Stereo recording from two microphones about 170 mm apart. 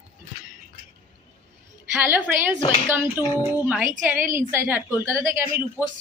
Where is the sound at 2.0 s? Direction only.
15° right (ahead or behind).